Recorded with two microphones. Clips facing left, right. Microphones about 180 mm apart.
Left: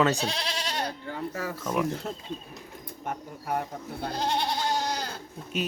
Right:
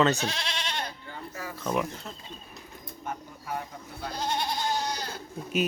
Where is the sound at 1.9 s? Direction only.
50° left (ahead or behind).